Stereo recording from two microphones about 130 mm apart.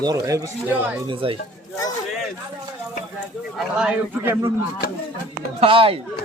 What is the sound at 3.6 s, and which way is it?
Speech, 5° right (ahead or behind).